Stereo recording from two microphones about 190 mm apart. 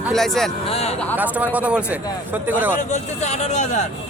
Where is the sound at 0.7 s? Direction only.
30° left (ahead or behind).